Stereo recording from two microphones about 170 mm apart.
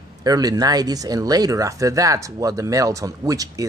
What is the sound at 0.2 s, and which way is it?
Speech, 20° right (ahead or behind).